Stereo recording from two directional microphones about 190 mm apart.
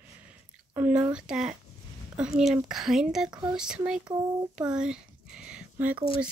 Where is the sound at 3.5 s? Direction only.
5° right (ahead or behind).